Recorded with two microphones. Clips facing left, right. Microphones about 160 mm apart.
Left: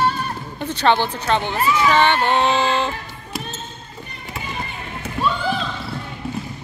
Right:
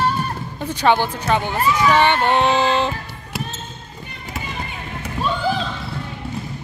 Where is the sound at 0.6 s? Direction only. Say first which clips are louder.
Right 1 dB; 10° right (ahead or behind).